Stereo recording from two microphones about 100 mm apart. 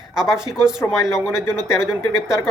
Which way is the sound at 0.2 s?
5° right (ahead or behind).